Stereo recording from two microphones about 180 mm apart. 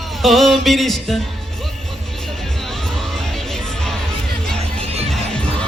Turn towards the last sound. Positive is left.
turn(degrees=-35)  # may be behind; listen again after turning